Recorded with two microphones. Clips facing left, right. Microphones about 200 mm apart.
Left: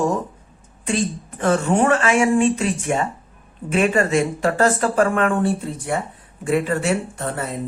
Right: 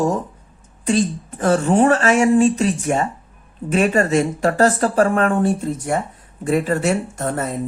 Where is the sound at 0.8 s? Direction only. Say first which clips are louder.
Right 4 dB; 40° right (ahead or behind).